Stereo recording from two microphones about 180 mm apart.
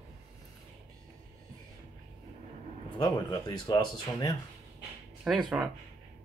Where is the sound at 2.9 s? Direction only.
25° left (ahead or behind).